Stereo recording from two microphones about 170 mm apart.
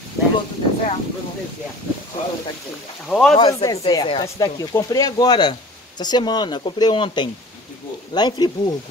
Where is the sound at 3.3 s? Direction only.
25° left (ahead or behind).